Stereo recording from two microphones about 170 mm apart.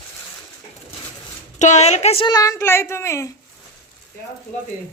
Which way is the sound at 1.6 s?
40° left (ahead or behind).